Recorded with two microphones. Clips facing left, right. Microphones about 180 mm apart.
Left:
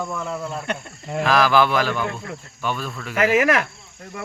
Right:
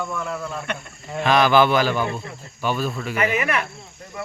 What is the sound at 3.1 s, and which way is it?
Speech, 90° left.